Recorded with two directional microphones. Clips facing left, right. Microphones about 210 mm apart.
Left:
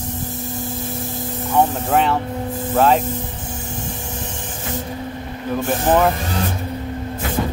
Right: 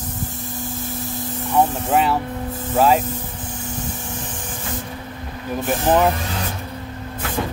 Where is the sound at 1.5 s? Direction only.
5° right (ahead or behind).